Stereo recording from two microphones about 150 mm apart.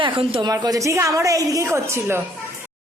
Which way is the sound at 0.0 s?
35° right (ahead or behind).